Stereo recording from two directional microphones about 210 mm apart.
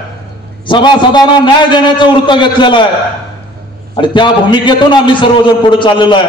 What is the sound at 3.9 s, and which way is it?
A man's voice, 20° left (ahead or behind).